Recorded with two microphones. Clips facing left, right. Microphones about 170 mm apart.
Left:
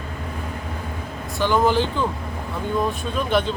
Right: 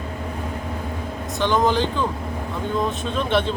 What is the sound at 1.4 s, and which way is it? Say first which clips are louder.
Speech: left 1 dB; 20° right (ahead or behind).